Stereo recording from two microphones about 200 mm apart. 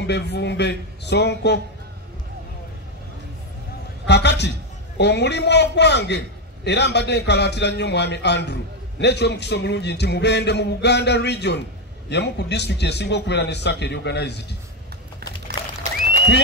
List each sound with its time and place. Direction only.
0.0 s a woman's voice: 60° left (ahead or behind)
4.0 s a woman's voice: 60° left (ahead or behind)